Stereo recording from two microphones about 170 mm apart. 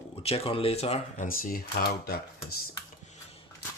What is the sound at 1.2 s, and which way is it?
Speech, 55° left (ahead or behind).